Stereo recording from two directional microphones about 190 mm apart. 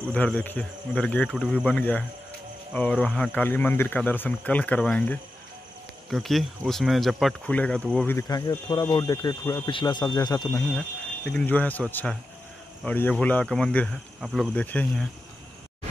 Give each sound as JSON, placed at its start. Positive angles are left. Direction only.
{"t": 0.1, "sound": "speech", "side_deg": 5}
{"t": 10.7, "sound": "speech", "side_deg": 5}